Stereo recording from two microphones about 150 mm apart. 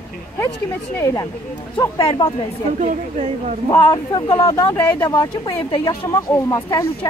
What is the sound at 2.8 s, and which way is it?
Speech, 55° right (ahead or behind).